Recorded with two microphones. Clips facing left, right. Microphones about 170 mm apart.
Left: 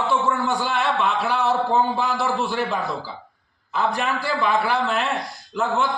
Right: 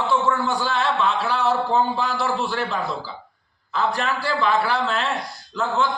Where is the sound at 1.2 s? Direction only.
20° left (ahead or behind).